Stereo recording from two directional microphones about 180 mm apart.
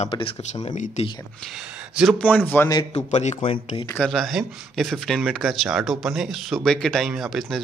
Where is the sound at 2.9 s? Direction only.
40° left (ahead or behind).